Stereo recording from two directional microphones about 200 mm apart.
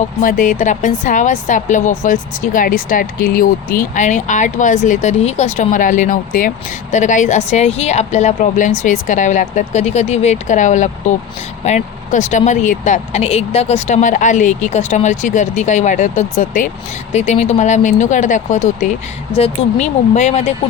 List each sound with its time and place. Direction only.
0.2 s a woman's voice: 40° left (ahead or behind)